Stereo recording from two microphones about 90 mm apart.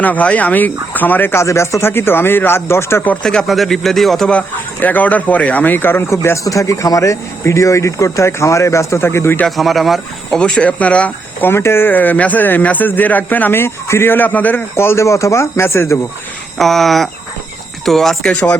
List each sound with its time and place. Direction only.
0.0 s speech: 15° left (ahead or behind)
3.2 s speech: 5° left (ahead or behind)
4.3 s speech: 15° left (ahead or behind)
9.6 s speech: centre (ahead or behind)
10.4 s speech: 15° left (ahead or behind); by 16.0 s 30° left (ahead or behind)
16.6 s speech: centre (ahead or behind)